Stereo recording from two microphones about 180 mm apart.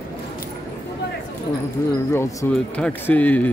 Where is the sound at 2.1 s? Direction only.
15° left (ahead or behind).